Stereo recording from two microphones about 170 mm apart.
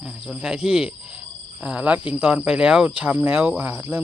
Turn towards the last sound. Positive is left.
turn(degrees=-15)  # may be behind; listen again after turning